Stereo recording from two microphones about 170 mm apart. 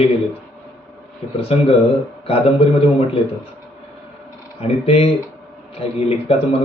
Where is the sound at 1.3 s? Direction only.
35° left (ahead or behind).